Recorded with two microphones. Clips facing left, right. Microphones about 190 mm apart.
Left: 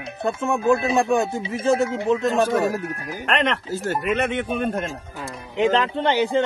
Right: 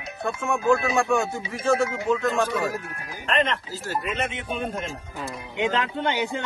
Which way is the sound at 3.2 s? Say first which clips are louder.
Left 2 dB; 70° left (ahead or behind).